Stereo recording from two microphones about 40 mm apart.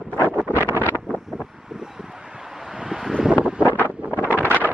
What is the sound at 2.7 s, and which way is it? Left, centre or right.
Wind, centre.